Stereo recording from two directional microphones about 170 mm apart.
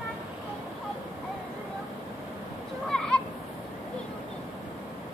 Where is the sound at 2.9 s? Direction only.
5° left (ahead or behind).